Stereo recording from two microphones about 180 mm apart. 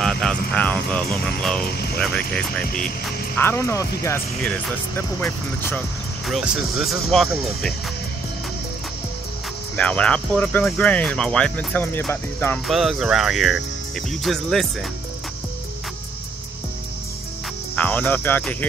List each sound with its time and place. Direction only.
0.0 s speech: centre (ahead or behind)
1.7 s speech: 60° left (ahead or behind)
2.0 s speech: 5° left (ahead or behind)
6.2 s speech: centre (ahead or behind)
9.8 s speech: 5° left (ahead or behind)
12.6 s speech: centre (ahead or behind)
17.7 s cricket: 10° left (ahead or behind)